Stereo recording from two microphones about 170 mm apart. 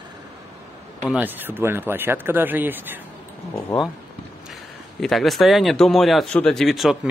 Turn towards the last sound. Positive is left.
turn(degrees=0)  # may be behind; listen again after turning